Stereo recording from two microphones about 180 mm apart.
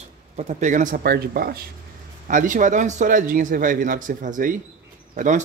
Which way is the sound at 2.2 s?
45° right (ahead or behind).